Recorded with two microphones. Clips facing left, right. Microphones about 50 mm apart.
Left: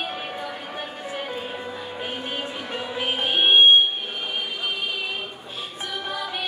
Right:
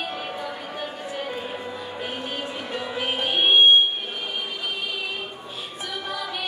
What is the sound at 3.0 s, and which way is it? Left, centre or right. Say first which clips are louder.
Music: left 1 dB; left.